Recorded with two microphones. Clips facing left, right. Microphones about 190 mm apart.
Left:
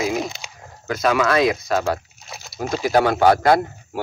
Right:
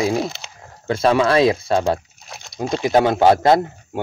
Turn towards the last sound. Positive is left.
turn(degrees=-25)  # may be behind; listen again after turning